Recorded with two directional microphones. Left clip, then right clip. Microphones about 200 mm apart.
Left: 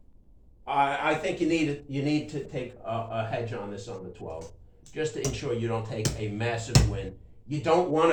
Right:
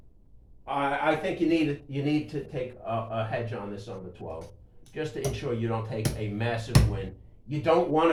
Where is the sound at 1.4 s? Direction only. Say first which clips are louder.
Right 1 dB; 15° left (ahead or behind).